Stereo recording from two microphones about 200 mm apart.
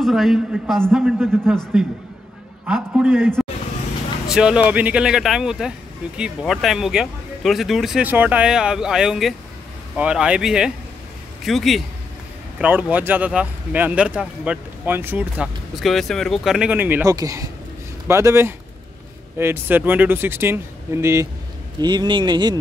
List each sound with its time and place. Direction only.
0.0 s speech: centre (ahead or behind); by 22.6 s 20° right (ahead or behind)